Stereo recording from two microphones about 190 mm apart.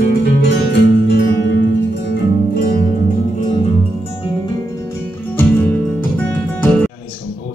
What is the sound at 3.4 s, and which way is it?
Music, 35° left (ahead or behind).